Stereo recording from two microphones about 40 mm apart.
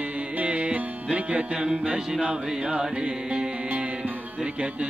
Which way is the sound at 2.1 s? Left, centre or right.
Right.